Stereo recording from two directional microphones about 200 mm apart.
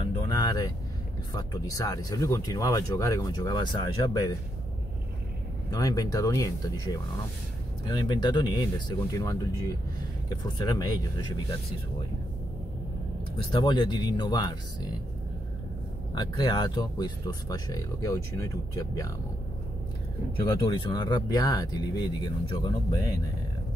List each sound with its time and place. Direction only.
0.0 s vehicle: 20° left (ahead or behind)
1.3 s speech: 20° left (ahead or behind)
5.7 s speech: 15° left (ahead or behind)
10.6 s speech: 20° left (ahead or behind)
13.5 s speech: 20° left (ahead or behind)
16.2 s speech: 20° left (ahead or behind)
20.4 s speech: 20° left (ahead or behind)